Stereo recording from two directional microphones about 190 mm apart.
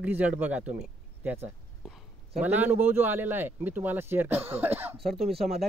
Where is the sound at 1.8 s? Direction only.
5° right (ahead or behind).